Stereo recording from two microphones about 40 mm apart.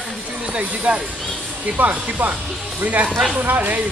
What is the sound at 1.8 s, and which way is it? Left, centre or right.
Speech, right.